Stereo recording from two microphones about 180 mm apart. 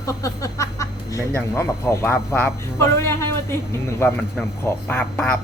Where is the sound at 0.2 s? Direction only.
15° left (ahead or behind).